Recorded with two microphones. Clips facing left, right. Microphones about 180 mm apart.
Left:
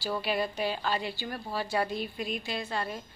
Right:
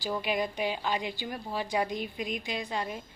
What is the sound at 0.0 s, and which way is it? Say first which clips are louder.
A woman's voice: even; 15° right (ahead or behind).